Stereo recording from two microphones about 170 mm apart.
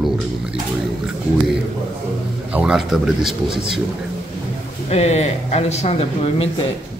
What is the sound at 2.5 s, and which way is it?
A man's voice, 5° right (ahead or behind).